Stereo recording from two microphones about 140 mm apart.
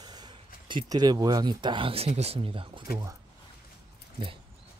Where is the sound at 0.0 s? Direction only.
30° right (ahead or behind).